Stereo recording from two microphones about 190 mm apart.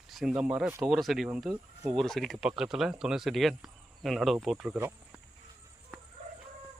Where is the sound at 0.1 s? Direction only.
Centre (ahead or behind).